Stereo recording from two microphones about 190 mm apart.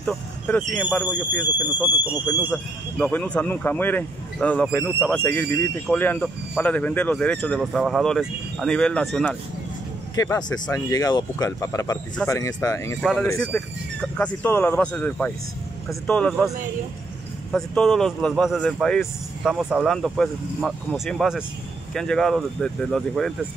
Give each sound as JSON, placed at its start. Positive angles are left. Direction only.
{"t": 0.0, "sound": "speech", "side_deg": 0}
{"t": 2.5, "sound": "speech", "side_deg": 5}
{"t": 10.1, "sound": "speech", "side_deg": 20}